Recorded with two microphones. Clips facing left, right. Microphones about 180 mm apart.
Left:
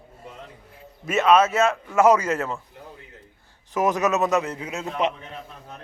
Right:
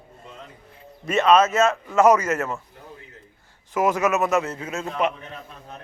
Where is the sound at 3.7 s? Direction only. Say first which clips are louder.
Right 1 dB; 15° left (ahead or behind).